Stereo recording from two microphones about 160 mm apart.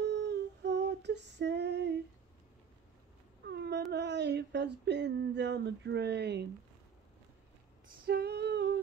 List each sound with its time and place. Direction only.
0.0 s female singing: 90° right
3.4 s a sound: 90° right
8.1 s female singing: 90° right